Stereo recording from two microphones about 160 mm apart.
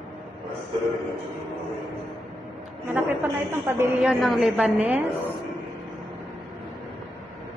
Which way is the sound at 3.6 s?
15° right (ahead or behind).